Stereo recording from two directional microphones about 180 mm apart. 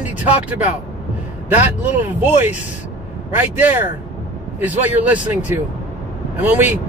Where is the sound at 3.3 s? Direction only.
10° right (ahead or behind).